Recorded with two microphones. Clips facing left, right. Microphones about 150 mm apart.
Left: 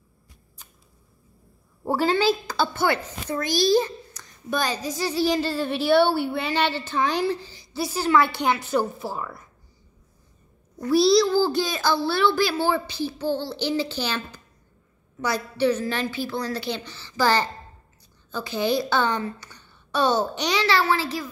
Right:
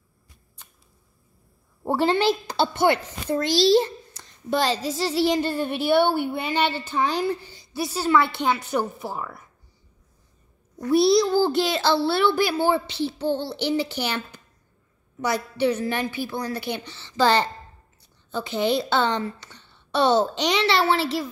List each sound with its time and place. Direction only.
1.9 s a woman's voice: 25° right (ahead or behind)
10.9 s a woman's voice: 20° right (ahead or behind)